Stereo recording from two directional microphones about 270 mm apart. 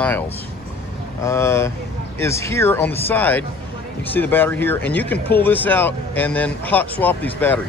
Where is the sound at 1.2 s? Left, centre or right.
Centre.